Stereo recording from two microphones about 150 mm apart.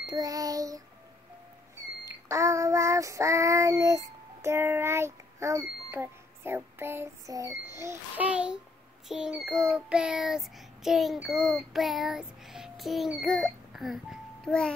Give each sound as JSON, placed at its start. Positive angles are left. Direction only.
{"t": 0.0, "sound": "child singing", "side_deg": -25}
{"t": 2.0, "sound": "child singing", "side_deg": -20}
{"t": 14.4, "sound": "a child's voice", "side_deg": 5}